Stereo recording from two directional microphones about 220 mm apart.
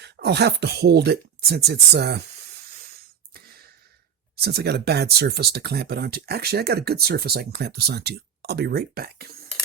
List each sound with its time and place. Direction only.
0.0 s speech: 50° right (ahead or behind)
4.4 s speech: 45° right (ahead or behind)